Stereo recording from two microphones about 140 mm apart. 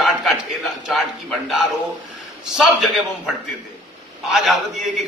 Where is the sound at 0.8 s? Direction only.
Centre (ahead or behind).